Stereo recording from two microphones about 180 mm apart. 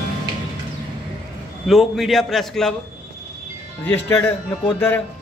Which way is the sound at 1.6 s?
Centre (ahead or behind).